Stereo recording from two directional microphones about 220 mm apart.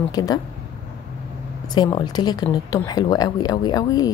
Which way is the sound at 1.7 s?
20° left (ahead or behind).